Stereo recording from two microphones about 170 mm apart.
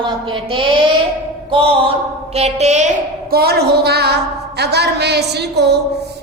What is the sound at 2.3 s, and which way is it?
Speech, 40° right (ahead or behind).